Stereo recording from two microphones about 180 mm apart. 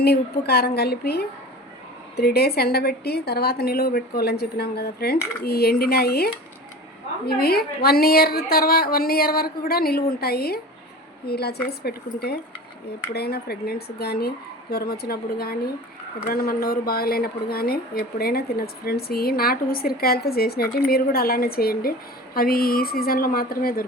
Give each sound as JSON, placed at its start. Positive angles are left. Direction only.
{"t": 0.0, "sound": "speech", "side_deg": 60}